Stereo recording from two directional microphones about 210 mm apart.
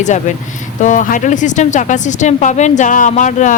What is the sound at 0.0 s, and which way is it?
Speech, 35° left (ahead or behind).